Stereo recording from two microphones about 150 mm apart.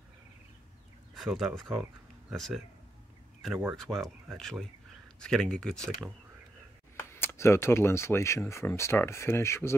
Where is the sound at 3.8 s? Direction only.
Centre (ahead or behind).